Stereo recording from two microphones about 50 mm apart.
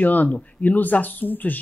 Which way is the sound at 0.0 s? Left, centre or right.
Left.